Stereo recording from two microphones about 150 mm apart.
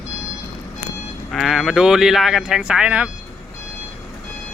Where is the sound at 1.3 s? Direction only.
Centre (ahead or behind).